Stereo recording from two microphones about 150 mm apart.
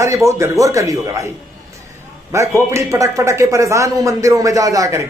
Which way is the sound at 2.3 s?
20° right (ahead or behind).